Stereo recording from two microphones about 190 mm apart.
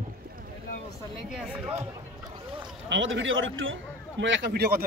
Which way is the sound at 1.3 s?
5° right (ahead or behind).